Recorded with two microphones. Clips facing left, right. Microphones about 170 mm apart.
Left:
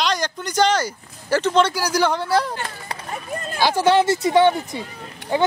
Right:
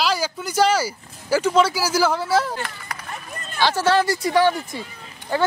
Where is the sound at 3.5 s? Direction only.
15° left (ahead or behind).